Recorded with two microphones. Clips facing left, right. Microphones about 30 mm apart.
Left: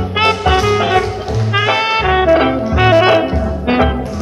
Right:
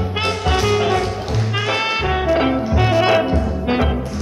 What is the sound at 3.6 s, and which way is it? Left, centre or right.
Music, left.